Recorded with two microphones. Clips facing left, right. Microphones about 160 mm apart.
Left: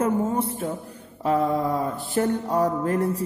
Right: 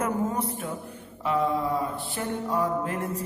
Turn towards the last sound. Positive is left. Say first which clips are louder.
# left 6 dB
turn(degrees=40)  # may be behind; listen again after turning